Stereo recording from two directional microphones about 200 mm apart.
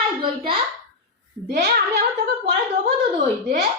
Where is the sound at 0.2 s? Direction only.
25° right (ahead or behind).